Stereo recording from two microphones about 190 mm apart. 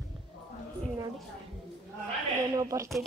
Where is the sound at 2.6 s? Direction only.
15° right (ahead or behind).